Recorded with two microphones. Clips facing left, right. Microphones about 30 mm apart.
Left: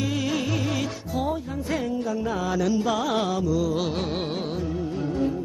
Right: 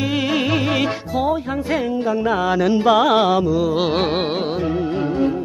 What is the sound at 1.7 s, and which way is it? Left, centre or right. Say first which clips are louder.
Music: right 6 dB; right.